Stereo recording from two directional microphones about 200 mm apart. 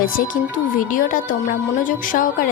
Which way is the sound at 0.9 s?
40° left (ahead or behind).